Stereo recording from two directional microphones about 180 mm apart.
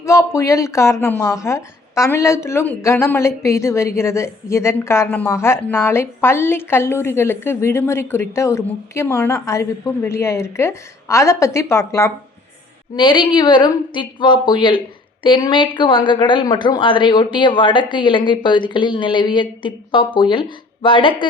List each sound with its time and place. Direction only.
0.0 s a woman's voice: 15° left (ahead or behind)